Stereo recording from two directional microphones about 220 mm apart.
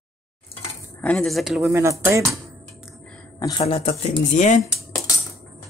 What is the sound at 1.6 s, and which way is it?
Speech, 10° right (ahead or behind).